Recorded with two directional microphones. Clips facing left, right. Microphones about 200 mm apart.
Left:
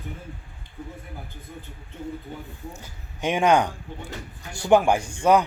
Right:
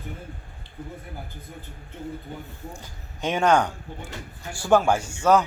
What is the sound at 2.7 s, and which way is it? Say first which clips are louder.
Speech: right 1 dB; 10° left (ahead or behind).